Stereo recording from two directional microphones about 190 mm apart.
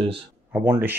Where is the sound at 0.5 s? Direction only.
10° right (ahead or behind).